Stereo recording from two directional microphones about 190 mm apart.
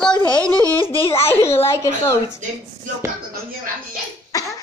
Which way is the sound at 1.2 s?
15° left (ahead or behind).